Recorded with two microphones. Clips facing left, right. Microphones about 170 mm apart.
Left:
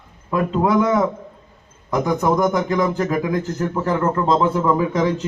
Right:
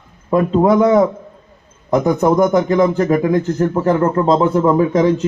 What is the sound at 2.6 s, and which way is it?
Speech, 25° right (ahead or behind).